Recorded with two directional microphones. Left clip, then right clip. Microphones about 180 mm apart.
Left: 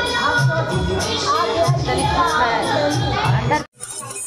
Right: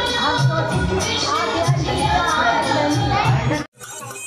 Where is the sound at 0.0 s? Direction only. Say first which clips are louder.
Left 1 dB; 25° left (ahead or behind).